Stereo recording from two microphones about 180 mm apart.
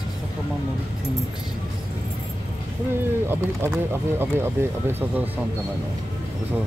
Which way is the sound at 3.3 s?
15° right (ahead or behind).